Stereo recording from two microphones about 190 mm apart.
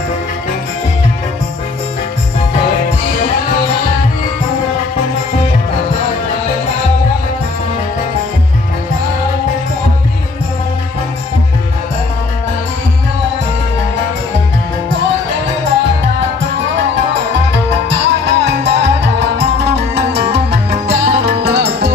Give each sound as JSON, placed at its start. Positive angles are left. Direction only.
{"t": 17.5, "sound": "music", "side_deg": -70}